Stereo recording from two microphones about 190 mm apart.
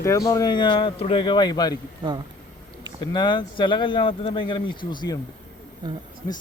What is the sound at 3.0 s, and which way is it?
Speech, 25° left (ahead or behind).